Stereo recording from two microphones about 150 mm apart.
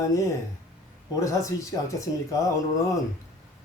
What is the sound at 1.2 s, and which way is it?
Speech, 20° left (ahead or behind).